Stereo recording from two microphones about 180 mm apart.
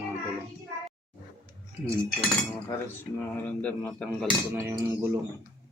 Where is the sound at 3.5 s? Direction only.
10° left (ahead or behind).